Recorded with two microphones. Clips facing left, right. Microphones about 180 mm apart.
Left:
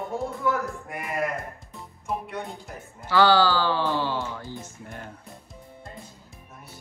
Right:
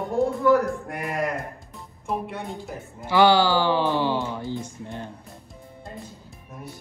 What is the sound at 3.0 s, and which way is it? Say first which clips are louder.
Speech: right 2 dB; 15° right (ahead or behind).